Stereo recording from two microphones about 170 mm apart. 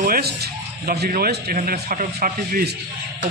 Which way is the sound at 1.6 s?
50° right (ahead or behind).